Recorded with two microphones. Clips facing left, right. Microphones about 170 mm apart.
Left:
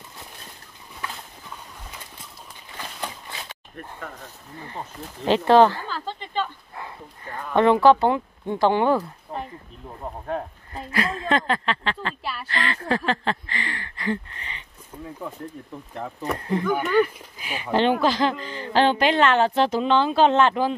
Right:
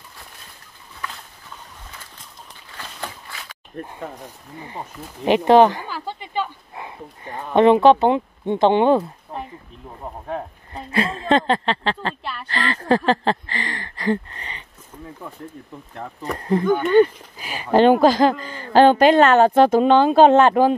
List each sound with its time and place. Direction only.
2.8 s a sound: 20° left (ahead or behind)
3.8 s speech: 35° right (ahead or behind)
4.2 s speech: 15° right (ahead or behind)
10.2 s speech: 5° right (ahead or behind)
10.9 s a woman's voice: 30° right (ahead or behind)
15.2 s speech: centre (ahead or behind)
16.8 s speech: 30° right (ahead or behind); by 20.7 s 50° right (ahead or behind)